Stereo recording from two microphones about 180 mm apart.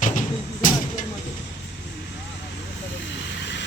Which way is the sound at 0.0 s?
45° left (ahead or behind).